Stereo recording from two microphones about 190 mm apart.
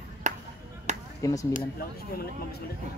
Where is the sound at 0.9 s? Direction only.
40° right (ahead or behind).